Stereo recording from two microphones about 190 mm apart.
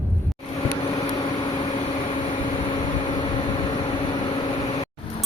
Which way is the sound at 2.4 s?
25° left (ahead or behind).